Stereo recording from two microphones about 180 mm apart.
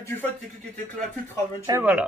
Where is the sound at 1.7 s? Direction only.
20° right (ahead or behind).